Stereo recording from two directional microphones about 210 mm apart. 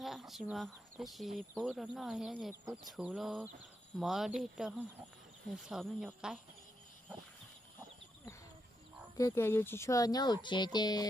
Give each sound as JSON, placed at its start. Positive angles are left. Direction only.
{"t": 0.0, "sound": "speech", "side_deg": 0}
{"t": 9.1, "sound": "speech", "side_deg": 15}